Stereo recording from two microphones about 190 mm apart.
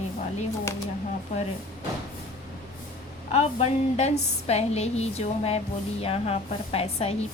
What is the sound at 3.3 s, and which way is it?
A woman's voice, 35° left (ahead or behind).